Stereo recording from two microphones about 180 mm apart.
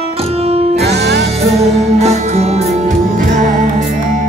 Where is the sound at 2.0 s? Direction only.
35° right (ahead or behind).